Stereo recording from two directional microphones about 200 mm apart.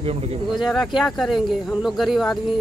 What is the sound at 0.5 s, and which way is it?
Speech, centre (ahead or behind).